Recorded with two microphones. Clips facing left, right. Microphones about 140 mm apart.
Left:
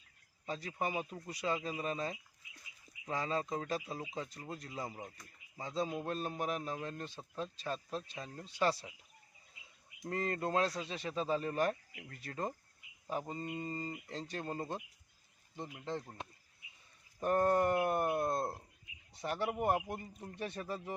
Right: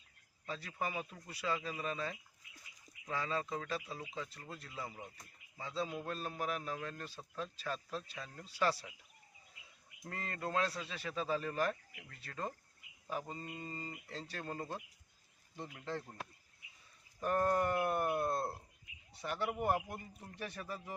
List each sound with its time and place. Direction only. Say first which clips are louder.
0.4 s speech: left 3 dB; 35° left (ahead or behind)
10.0 s speech: left 6 dB; 30° left (ahead or behind)
17.2 s speech: left 3 dB; 30° left (ahead or behind)